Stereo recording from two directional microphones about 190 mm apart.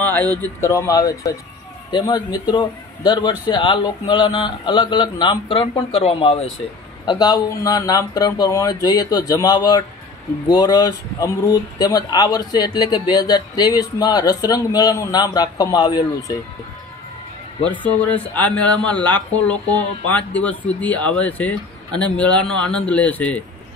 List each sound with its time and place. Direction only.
0.0 s a man's voice: 10° left (ahead or behind); by 6.3 s 30° left (ahead or behind)
7.1 s a man's voice: 20° left (ahead or behind)
17.6 s speech: 10° left (ahead or behind)